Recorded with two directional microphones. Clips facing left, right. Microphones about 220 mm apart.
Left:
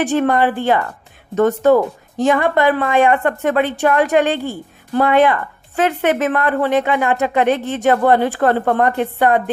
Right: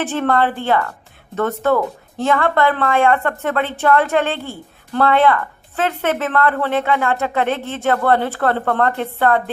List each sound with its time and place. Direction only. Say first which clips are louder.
0.0 s a woman's voice: left 3 dB; 15° left (ahead or behind)